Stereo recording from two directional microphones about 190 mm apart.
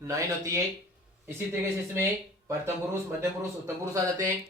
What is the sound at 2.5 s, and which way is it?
Speech, 15° right (ahead or behind).